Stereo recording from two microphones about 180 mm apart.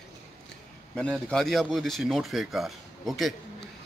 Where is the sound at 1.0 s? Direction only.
Centre (ahead or behind).